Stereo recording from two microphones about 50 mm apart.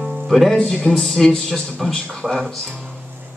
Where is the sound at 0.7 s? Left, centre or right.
Centre.